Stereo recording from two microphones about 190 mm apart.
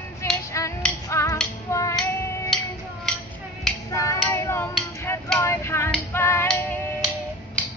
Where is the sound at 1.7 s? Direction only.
15° left (ahead or behind).